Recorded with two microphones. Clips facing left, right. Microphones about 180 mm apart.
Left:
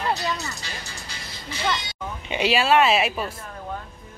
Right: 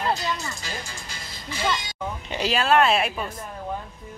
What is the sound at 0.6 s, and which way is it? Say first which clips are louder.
Music: right 2 dB; 50° right (ahead or behind).